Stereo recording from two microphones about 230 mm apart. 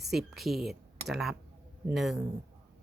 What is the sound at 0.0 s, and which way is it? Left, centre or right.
Speech, centre.